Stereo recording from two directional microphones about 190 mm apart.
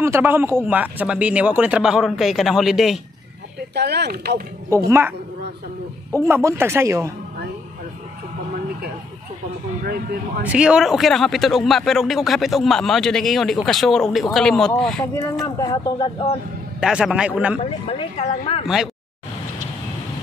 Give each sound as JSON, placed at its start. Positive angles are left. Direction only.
{"t": 0.0, "sound": "a man's voice", "side_deg": -10}
{"t": 3.7, "sound": "speech", "side_deg": -60}
{"t": 4.6, "sound": "speech", "side_deg": -15}
{"t": 6.2, "sound": "speech", "side_deg": -15}
{"t": 9.8, "sound": "speech", "side_deg": -55}
{"t": 10.4, "sound": "a man's voice", "side_deg": -5}
{"t": 15.6, "sound": "speech", "side_deg": 25}
{"t": 16.8, "sound": "a man's voice", "side_deg": -5}
{"t": 17.6, "sound": "speech", "side_deg": 30}